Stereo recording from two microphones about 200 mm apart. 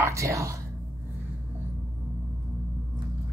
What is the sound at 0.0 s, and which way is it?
Speech, 15° right (ahead or behind).